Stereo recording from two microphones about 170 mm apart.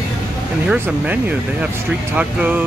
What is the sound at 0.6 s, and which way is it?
Speech, 10° right (ahead or behind).